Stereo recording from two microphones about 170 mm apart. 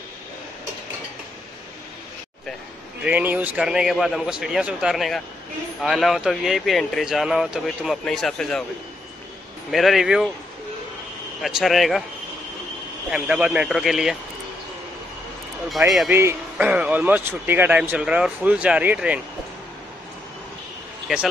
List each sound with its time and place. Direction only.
3.0 s speech: 10° right (ahead or behind)
9.7 s speech: centre (ahead or behind)
11.4 s speech: centre (ahead or behind)
13.1 s speech: 5° right (ahead or behind)
16.1 s speech: 15° right (ahead or behind)
21.1 s speech: 5° right (ahead or behind)